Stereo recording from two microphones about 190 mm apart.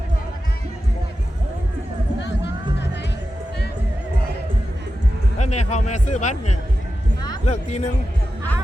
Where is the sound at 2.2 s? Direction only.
65° left (ahead or behind).